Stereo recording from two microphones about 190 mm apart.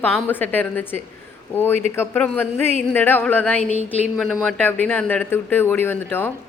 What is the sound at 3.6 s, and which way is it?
Speech, 35° left (ahead or behind).